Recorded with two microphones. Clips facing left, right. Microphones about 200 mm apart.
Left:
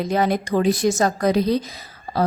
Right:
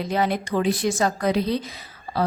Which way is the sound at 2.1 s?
40° left (ahead or behind).